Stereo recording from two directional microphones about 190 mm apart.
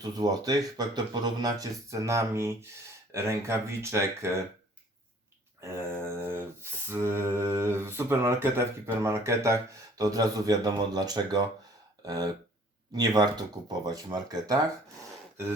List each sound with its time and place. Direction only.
0.0 s speech: 20° right (ahead or behind)
5.5 s a sound: 15° right (ahead or behind)
10.0 s speech: 20° right (ahead or behind)